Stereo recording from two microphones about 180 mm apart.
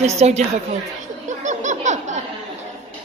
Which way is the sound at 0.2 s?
40° right (ahead or behind).